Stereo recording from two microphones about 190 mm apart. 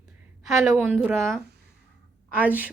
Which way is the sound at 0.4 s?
5° right (ahead or behind).